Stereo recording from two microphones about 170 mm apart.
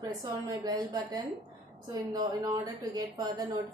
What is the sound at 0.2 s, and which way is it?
Speech, 20° right (ahead or behind).